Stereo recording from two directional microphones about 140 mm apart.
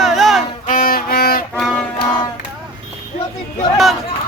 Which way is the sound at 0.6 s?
80° left.